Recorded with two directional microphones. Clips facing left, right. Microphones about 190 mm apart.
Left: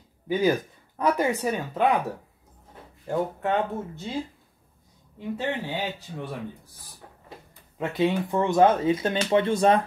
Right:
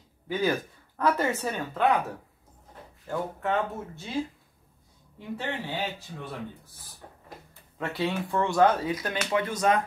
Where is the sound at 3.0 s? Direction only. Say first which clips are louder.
Left 4 dB; 20° left (ahead or behind).